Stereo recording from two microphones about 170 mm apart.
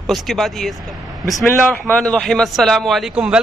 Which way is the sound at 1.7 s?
5° left (ahead or behind).